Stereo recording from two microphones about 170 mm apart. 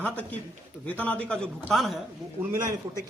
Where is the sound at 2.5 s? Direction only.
20° right (ahead or behind).